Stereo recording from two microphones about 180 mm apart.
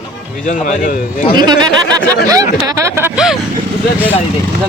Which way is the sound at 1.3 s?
25° right (ahead or behind).